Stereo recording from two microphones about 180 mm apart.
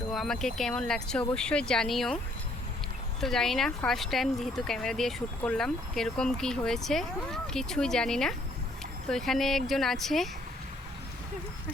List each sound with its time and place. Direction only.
0.1 s speech: centre (ahead or behind)
3.2 s speech: centre (ahead or behind)